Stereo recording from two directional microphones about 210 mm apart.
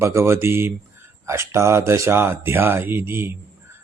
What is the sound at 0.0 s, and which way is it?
Speech, 15° right (ahead or behind).